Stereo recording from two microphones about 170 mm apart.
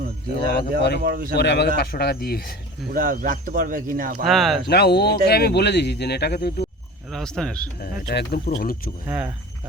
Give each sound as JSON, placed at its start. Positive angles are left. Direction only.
{"t": 0.8, "sound": "speech", "side_deg": 75}
{"t": 1.0, "sound": "speech", "side_deg": -60}
{"t": 1.4, "sound": "speech", "side_deg": 80}
{"t": 1.8, "sound": "speech", "side_deg": 70}
{"t": 2.9, "sound": "speech", "side_deg": -55}
{"t": 4.2, "sound": "speech", "side_deg": 0}
{"t": 4.7, "sound": "speech", "side_deg": 70}
{"t": 7.1, "sound": "speech", "side_deg": 5}
{"t": 7.8, "sound": "speech", "side_deg": 65}
{"t": 8.5, "sound": "speech", "side_deg": 55}
{"t": 9.0, "sound": "speech", "side_deg": -10}